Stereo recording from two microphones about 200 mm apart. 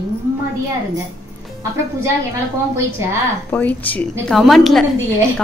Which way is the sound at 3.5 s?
10° left (ahead or behind).